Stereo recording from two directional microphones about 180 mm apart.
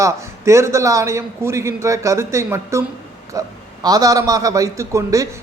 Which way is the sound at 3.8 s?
20° right (ahead or behind).